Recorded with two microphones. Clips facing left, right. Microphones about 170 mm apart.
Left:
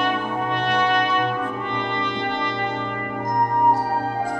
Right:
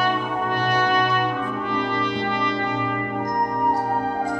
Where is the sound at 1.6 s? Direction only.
5° right (ahead or behind).